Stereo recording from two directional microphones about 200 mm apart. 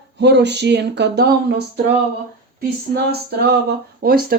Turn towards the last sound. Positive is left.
turn(degrees=-50)  # may be behind; listen again after turning